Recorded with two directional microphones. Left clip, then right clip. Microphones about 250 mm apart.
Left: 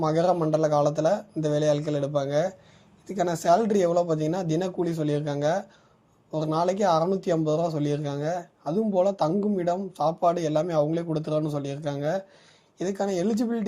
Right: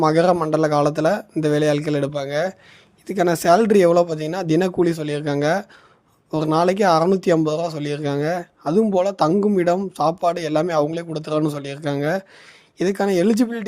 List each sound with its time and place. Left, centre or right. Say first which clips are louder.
0.0 s speech: right 7 dB; right